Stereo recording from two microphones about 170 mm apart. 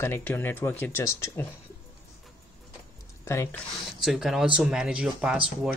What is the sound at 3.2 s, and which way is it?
Speech, 15° left (ahead or behind).